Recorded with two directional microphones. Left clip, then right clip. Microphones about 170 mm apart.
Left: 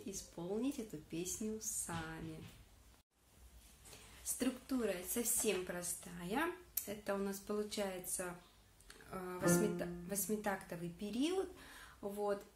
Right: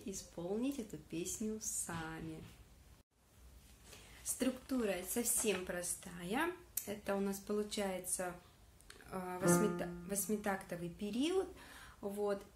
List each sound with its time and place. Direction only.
0.1 s speech: 15° right (ahead or behind)
4.2 s speech: 20° right (ahead or behind)
8.8 s a sound: 20° right (ahead or behind)
9.8 s speech: 20° right (ahead or behind)